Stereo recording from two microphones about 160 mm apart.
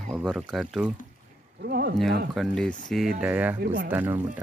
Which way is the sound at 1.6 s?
75° right (ahead or behind).